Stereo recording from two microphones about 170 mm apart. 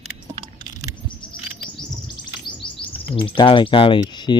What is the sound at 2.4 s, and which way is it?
Chirp, 30° left (ahead or behind).